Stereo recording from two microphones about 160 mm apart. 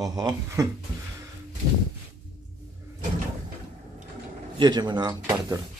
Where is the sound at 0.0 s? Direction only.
25° right (ahead or behind).